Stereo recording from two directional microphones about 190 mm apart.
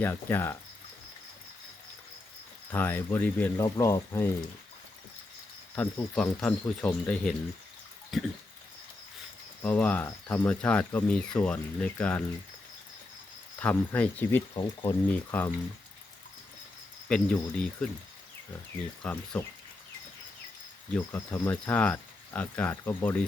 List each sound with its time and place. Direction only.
0.0 s speech: 10° left (ahead or behind)
2.7 s speech: 10° left (ahead or behind)
5.7 s speech: 5° left (ahead or behind)
9.6 s speech: 5° left (ahead or behind)
13.6 s speech: 5° left (ahead or behind)
14.5 s speech: 20° left (ahead or behind)
15.3 s speech: 10° left (ahead or behind)
17.1 s speech: 5° left (ahead or behind)
19.0 s speech: 10° left (ahead or behind)
20.9 s speech: 10° left (ahead or behind)